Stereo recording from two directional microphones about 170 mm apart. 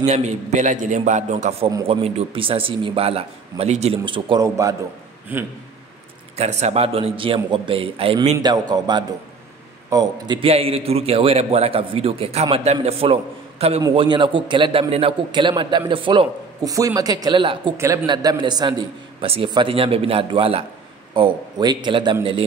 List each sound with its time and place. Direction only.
0.0 s a man's voice: 40° right (ahead or behind); by 5.5 s 10° right (ahead or behind)
6.3 s a man's voice: 40° right (ahead or behind)